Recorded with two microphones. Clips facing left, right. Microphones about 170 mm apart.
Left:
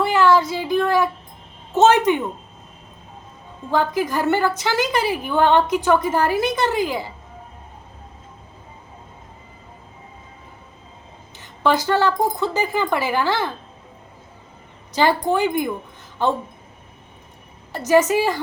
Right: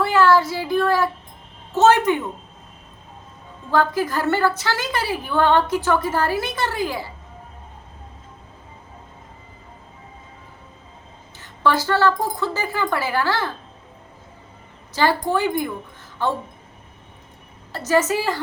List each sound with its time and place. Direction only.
0.0 s a man's voice: 15° left (ahead or behind)
3.7 s a woman's voice: 15° left (ahead or behind)
11.3 s a woman's voice: 15° left (ahead or behind)
14.9 s a woman's voice: 15° left (ahead or behind)
17.7 s a woman's voice: 15° left (ahead or behind)